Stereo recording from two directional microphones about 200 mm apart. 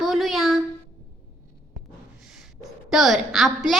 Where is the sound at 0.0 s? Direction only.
Centre (ahead or behind).